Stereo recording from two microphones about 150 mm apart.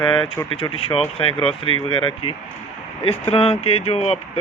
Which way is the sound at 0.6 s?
40° left (ahead or behind).